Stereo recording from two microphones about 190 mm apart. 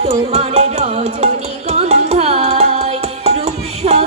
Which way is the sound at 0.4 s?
35° right (ahead or behind).